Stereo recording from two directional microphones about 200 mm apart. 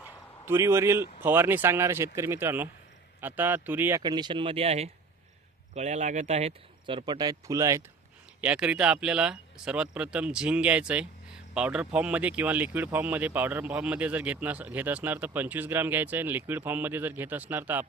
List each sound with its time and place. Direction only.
0.0 s a sound: 10° right (ahead or behind)
1.2 s speech: 10° right (ahead or behind)
4.0 s speech: 20° right (ahead or behind)